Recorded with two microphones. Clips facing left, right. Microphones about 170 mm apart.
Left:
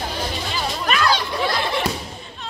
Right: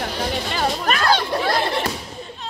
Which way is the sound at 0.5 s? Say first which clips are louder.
Right 1 dB; 50° right (ahead or behind).